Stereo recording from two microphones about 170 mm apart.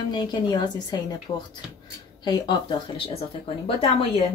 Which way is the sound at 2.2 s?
25° left (ahead or behind).